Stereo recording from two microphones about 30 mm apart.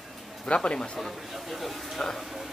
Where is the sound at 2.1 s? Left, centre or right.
Centre.